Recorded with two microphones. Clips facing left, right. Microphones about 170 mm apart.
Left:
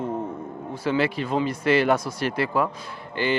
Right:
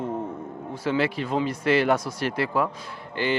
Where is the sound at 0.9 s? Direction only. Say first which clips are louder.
Left 1 dB; 15° left (ahead or behind).